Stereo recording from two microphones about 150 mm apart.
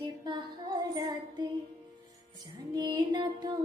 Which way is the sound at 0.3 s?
30° right (ahead or behind).